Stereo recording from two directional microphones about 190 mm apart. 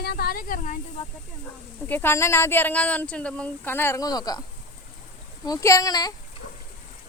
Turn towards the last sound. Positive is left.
turn(degrees=20)  # may be behind; listen again after turning